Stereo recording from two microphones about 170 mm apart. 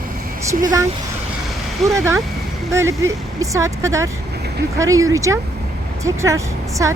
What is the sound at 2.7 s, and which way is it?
Speech, 15° right (ahead or behind).